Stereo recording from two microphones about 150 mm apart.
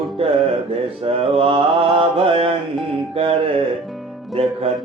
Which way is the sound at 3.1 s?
35° right (ahead or behind).